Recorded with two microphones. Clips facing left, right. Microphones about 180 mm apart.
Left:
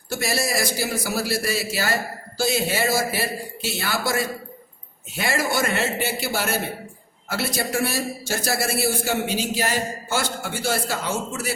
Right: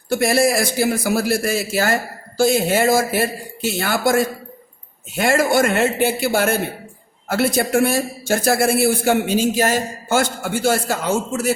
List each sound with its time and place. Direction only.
0.1 s a man's voice: 55° right (ahead or behind)